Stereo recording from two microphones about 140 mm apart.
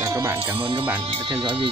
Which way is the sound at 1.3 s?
35° right (ahead or behind).